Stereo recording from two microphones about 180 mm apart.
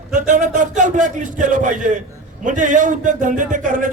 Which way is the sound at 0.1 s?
45° right (ahead or behind).